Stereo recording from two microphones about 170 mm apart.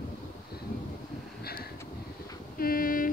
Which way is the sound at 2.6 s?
60° left (ahead or behind).